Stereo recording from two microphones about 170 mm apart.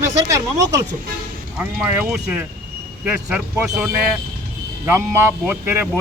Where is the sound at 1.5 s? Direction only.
10° right (ahead or behind).